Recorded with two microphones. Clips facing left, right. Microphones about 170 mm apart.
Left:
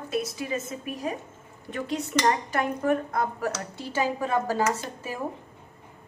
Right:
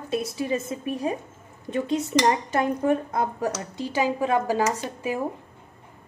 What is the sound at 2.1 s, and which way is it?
A woman's voice, 15° right (ahead or behind).